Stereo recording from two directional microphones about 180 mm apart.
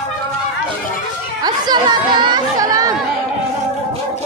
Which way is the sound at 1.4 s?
25° right (ahead or behind).